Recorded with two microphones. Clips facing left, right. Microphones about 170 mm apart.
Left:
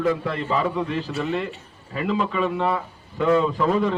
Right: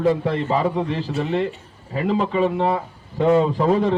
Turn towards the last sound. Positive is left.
turn(degrees=-30)  # may be behind; listen again after turning